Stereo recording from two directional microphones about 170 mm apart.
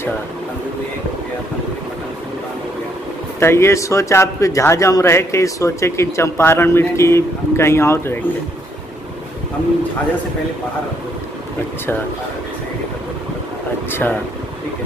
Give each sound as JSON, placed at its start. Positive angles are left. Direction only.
{"t": 3.3, "sound": "speech", "side_deg": 15}
{"t": 13.8, "sound": "speech", "side_deg": 10}